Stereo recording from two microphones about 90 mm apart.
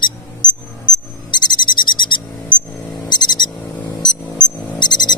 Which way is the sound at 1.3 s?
55° left (ahead or behind).